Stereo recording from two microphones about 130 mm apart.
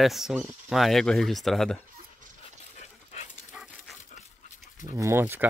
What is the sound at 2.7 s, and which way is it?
Dog, 65° left (ahead or behind).